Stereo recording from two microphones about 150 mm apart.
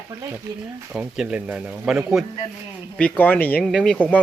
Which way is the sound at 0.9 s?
5° right (ahead or behind).